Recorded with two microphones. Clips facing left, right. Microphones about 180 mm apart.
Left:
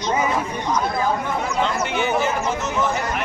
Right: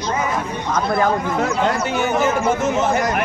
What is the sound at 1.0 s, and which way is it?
Speech, 70° right (ahead or behind).